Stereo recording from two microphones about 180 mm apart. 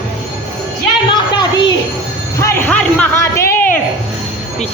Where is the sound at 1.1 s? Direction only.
25° left (ahead or behind).